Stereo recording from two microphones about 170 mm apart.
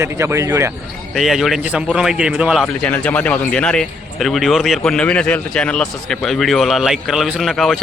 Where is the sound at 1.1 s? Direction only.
Centre (ahead or behind).